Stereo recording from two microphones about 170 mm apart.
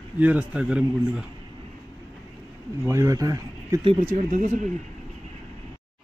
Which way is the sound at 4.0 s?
45° right (ahead or behind).